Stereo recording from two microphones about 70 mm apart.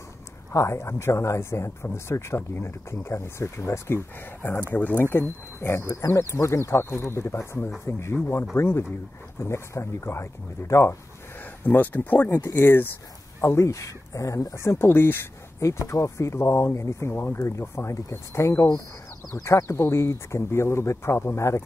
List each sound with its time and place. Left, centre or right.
0.5 s speech: left
11.6 s speech: left
15.6 s speech: left